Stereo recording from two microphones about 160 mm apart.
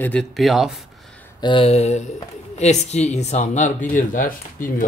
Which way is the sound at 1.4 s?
35° left (ahead or behind).